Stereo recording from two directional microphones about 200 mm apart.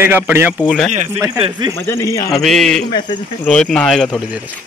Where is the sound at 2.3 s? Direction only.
Centre (ahead or behind).